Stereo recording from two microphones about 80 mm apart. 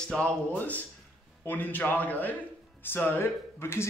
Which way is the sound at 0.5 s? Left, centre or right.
Left.